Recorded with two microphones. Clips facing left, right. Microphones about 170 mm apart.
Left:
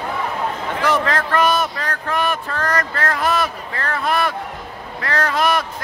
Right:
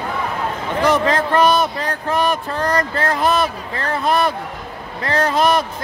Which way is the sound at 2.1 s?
40° right (ahead or behind).